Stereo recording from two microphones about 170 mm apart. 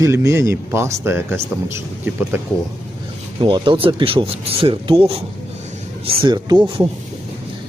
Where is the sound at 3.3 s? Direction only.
30° right (ahead or behind).